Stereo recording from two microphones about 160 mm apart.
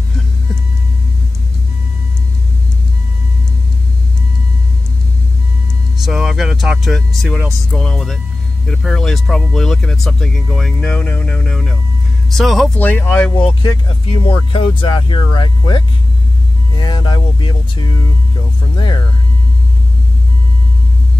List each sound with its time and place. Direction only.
6.0 s speech: centre (ahead or behind)
13.3 s speech: 25° left (ahead or behind)
14.1 s speech: 35° left (ahead or behind)